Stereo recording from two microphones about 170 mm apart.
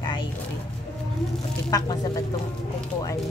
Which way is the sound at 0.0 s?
30° left (ahead or behind).